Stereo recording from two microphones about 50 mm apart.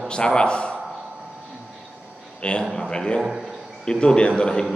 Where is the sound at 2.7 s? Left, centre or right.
Centre.